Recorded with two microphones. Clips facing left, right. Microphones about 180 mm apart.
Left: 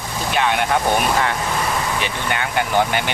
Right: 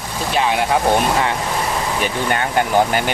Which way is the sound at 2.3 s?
40° right (ahead or behind).